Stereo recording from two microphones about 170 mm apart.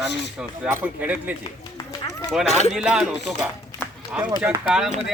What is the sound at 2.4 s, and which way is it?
Speech, 40° left (ahead or behind).